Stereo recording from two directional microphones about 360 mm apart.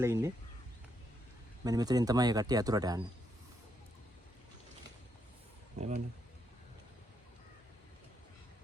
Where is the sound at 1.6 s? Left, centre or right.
Centre.